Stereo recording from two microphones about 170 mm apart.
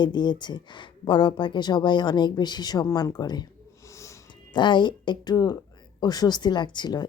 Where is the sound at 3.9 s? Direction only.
15° left (ahead or behind).